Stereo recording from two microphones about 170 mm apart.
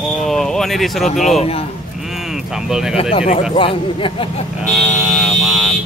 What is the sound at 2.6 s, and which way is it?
Speech, 5° right (ahead or behind).